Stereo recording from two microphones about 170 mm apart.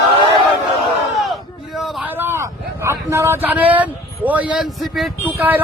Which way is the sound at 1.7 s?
Centre (ahead or behind).